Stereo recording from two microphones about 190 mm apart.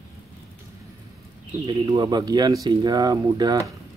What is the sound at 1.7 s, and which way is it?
Speech, 20° right (ahead or behind).